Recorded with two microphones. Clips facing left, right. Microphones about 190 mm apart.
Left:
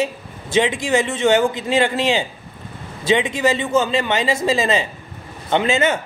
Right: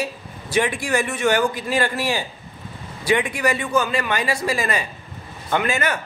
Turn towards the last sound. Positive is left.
turn(degrees=25)  # may be behind; listen again after turning